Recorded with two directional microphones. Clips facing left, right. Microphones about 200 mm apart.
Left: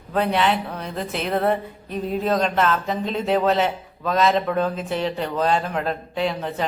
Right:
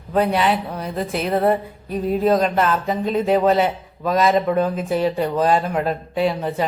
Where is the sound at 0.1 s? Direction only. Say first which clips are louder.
Right 2 dB; 5° right (ahead or behind).